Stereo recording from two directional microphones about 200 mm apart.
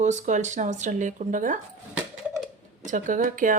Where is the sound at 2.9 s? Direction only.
40° right (ahead or behind).